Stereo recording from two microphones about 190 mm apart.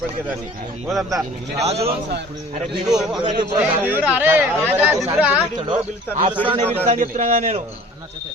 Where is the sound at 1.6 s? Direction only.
35° right (ahead or behind).